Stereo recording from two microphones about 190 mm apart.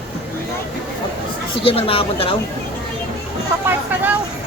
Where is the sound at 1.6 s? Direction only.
30° left (ahead or behind).